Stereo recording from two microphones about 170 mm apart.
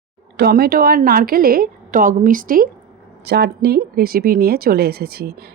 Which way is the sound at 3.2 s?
75° right (ahead or behind).